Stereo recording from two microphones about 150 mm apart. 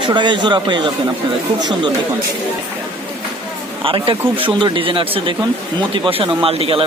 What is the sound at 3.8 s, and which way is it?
Speech, 35° right (ahead or behind).